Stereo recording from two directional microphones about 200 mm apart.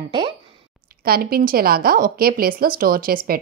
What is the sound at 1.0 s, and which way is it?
Speech, 50° right (ahead or behind).